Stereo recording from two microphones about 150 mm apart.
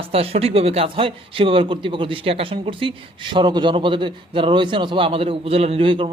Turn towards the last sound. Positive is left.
turn(degrees=-35)  # may be behind; listen again after turning